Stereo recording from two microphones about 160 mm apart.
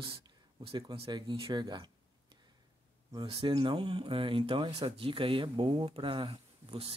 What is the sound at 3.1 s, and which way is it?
Speech, 30° right (ahead or behind).